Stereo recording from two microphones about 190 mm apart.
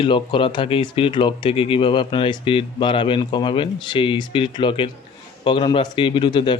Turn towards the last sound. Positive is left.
turn(degrees=25)  # may be behind; listen again after turning